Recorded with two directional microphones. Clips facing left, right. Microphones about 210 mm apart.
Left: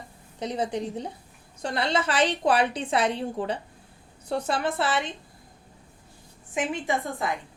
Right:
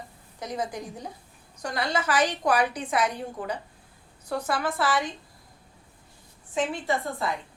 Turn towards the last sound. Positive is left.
turn(degrees=20)  # may be behind; listen again after turning